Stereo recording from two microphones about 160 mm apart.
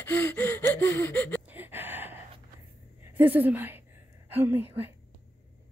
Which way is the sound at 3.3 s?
10° right (ahead or behind).